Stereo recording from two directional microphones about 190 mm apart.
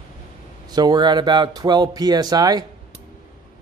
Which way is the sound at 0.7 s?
20° right (ahead or behind).